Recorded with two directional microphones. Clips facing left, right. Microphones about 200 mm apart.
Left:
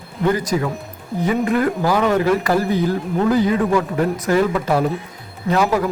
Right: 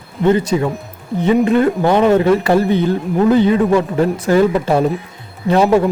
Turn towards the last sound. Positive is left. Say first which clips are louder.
# right 6 dB
turn(degrees=-30)  # may be behind; listen again after turning